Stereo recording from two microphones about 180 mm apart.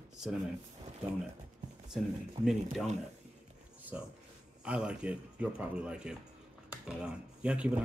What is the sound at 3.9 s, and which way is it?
Speech, 10° right (ahead or behind).